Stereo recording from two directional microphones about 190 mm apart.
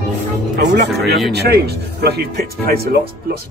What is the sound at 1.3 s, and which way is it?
Speech, 60° right (ahead or behind).